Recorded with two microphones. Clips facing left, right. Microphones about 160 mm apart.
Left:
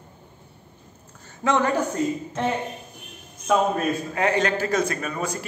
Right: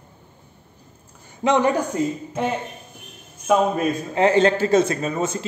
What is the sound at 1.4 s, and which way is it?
Speech, 20° right (ahead or behind).